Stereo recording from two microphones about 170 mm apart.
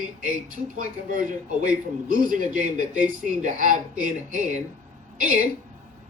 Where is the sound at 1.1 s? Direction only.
50° right (ahead or behind).